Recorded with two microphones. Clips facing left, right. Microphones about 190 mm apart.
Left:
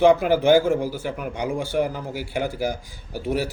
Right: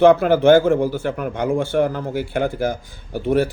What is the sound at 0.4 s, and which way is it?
Speech, 55° right (ahead or behind).